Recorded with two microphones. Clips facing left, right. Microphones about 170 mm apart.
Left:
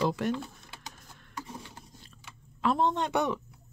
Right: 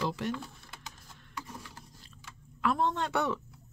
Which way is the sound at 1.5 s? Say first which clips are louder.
Left 2 dB; 20° left (ahead or behind).